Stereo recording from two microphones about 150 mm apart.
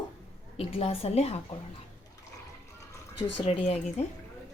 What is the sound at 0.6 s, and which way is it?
Speech, 40° left (ahead or behind).